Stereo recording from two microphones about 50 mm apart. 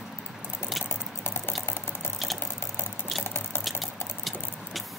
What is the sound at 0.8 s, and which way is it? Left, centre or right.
Clip-clop, left.